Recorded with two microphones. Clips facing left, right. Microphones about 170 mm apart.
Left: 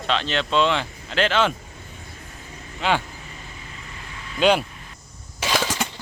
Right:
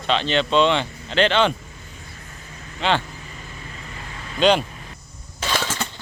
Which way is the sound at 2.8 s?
5° left (ahead or behind).